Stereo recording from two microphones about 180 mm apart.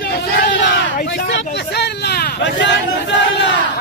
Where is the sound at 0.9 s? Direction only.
55° left (ahead or behind).